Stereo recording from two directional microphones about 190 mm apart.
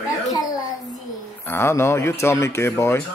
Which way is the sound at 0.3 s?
20° left (ahead or behind).